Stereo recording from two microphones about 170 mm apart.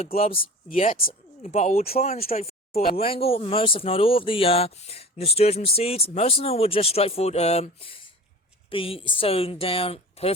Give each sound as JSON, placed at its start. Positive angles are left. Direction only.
{"t": 0.0, "sound": "speech", "side_deg": 35}
{"t": 0.9, "sound": "speech", "side_deg": 45}
{"t": 2.3, "sound": "a sound", "side_deg": 40}
{"t": 3.0, "sound": "speech", "side_deg": 35}